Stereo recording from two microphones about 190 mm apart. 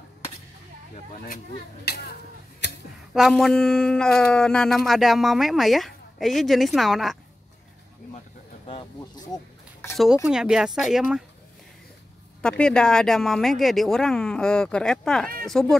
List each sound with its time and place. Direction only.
1.1 s speech: 45° left (ahead or behind)
1.9 s speech: 60° left (ahead or behind)
2.6 s a sound: 65° left (ahead or behind)
3.2 s speech: centre (ahead or behind)
8.6 s speech: 30° left (ahead or behind)
10.2 s speech: 5° right (ahead or behind)
12.4 s speech: 5° left (ahead or behind)